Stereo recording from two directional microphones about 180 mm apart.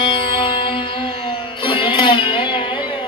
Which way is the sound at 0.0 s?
30° left (ahead or behind).